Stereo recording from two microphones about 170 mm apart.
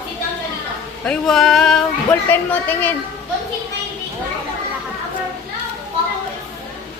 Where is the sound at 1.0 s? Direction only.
5° left (ahead or behind).